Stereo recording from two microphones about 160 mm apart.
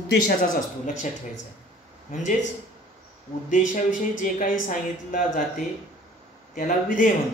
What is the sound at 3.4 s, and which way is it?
A woman's voice, 55° left (ahead or behind).